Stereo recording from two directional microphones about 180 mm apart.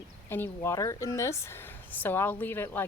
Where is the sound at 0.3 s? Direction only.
10° left (ahead or behind).